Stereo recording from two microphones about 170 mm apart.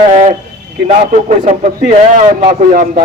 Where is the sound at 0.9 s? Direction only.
45° right (ahead or behind).